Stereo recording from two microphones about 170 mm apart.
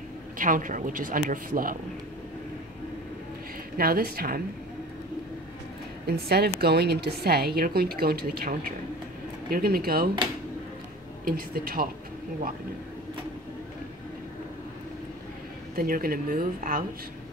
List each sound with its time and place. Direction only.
0.4 s speech: 50° right (ahead or behind)
3.7 s speech: 60° right (ahead or behind)
6.0 s a woman's voice: 70° right (ahead or behind)
11.2 s speech: 55° right (ahead or behind)
15.7 s speech: 60° right (ahead or behind)